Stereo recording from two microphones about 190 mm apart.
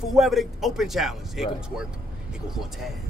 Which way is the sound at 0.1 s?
Centre (ahead or behind).